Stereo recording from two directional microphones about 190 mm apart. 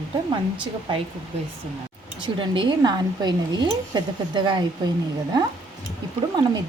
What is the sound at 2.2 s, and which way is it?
Speech, 25° right (ahead or behind).